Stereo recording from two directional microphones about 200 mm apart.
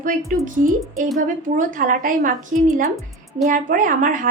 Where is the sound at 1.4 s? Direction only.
40° right (ahead or behind).